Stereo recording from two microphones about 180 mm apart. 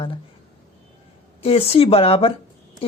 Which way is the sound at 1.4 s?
30° left (ahead or behind).